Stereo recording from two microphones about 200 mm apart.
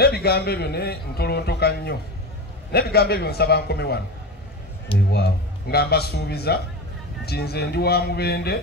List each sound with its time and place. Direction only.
0.0 s speech: 50° left (ahead or behind)
5.1 s speech: 55° left (ahead or behind)